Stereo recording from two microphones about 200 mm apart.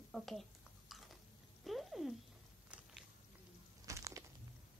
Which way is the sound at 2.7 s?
5° right (ahead or behind).